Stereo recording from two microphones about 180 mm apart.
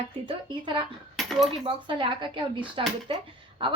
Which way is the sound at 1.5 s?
30° right (ahead or behind).